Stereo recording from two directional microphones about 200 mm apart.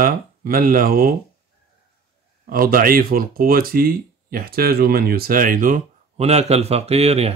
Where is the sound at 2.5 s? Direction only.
45° right (ahead or behind).